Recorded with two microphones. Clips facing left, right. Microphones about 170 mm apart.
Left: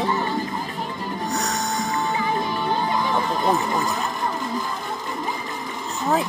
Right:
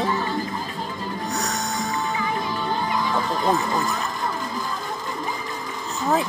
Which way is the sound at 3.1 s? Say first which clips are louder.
Even; 20° left (ahead or behind).